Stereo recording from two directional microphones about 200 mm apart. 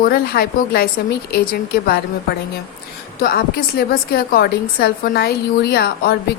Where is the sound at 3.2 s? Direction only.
50° left (ahead or behind).